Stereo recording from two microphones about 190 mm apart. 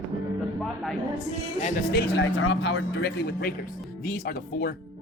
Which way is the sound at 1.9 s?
60° left (ahead or behind).